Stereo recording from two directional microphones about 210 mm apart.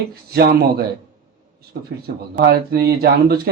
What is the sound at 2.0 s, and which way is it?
Speech, 50° right (ahead or behind).